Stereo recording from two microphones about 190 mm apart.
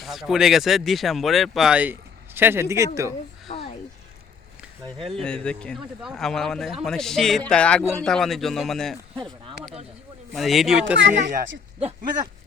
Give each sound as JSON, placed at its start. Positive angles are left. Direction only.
{"t": 0.0, "sound": "speech", "side_deg": 0}
{"t": 3.5, "sound": "a sound", "side_deg": 40}
{"t": 5.1, "sound": "speech", "side_deg": 5}
{"t": 10.3, "sound": "speech", "side_deg": 0}
{"t": 11.1, "sound": "speech", "side_deg": -40}